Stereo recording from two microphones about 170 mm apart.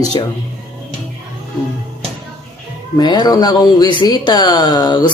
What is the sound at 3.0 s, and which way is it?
Speech, 25° left (ahead or behind).